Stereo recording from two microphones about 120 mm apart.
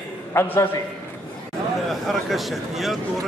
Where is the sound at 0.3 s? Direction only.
25° left (ahead or behind).